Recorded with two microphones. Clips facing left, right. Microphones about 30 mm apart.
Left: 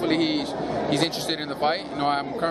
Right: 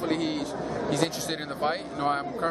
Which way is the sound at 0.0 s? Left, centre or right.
Left.